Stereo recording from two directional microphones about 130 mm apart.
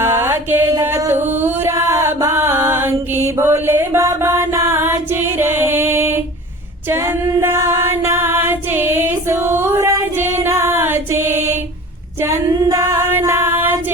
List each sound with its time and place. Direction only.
0.0 s music: 20° right (ahead or behind)
0.8 s chant: 20° right (ahead or behind)
5.4 s music: 20° right (ahead or behind)
6.9 s a capella: 20° right (ahead or behind)
12.2 s female singing: 25° right (ahead or behind)